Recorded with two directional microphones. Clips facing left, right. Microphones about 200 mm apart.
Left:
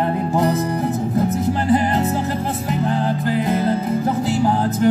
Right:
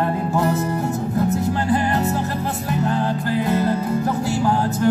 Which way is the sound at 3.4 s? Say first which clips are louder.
Right 1 dB; 15° left (ahead or behind).